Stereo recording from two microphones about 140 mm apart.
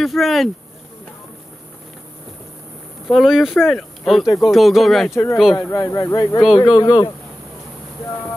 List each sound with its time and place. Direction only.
0.0 s speech: centre (ahead or behind)
3.1 s speech: centre (ahead or behind)
5.1 s speech: 20° left (ahead or behind)